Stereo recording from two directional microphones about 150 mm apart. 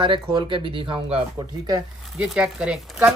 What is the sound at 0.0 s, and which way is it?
Speech, 30° right (ahead or behind).